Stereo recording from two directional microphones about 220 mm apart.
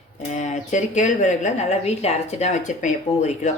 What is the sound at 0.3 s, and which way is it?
Speech, 35° left (ahead or behind).